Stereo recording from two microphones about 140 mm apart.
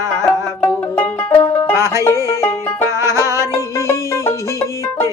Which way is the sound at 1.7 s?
20° right (ahead or behind).